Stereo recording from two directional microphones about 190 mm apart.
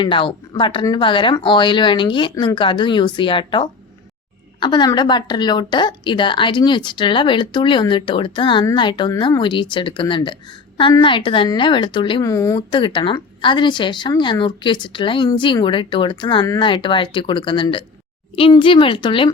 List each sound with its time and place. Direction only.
0.0 s a woman's voice: 25° left (ahead or behind)